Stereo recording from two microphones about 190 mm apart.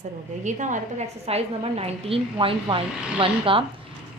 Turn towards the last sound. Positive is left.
turn(degrees=-25)  # may be behind; listen again after turning